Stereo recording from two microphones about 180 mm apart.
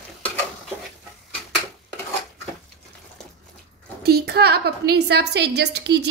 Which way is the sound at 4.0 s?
60° right (ahead or behind).